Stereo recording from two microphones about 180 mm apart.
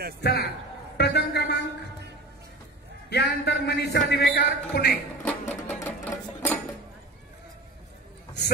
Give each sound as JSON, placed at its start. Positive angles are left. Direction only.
{"t": 0.2, "sound": "a man's voice", "side_deg": 70}
{"t": 3.1, "sound": "a man's voice", "side_deg": 70}
{"t": 5.2, "sound": "sewing machine", "side_deg": 10}